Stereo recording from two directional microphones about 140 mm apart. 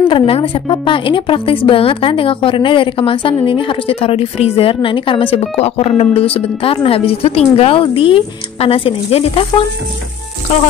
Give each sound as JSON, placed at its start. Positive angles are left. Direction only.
{"t": 0.1, "sound": "a woman's voice", "side_deg": 40}